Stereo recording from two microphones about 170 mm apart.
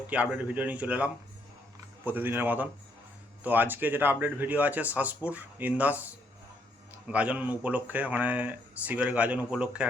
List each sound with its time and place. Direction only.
0.1 s speech: 10° right (ahead or behind)
7.1 s speech: 10° right (ahead or behind)